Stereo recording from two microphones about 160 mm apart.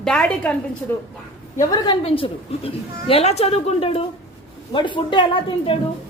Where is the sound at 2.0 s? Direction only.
35° left (ahead or behind).